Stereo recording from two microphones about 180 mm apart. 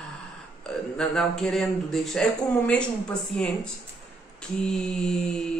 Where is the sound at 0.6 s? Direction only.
5° left (ahead or behind).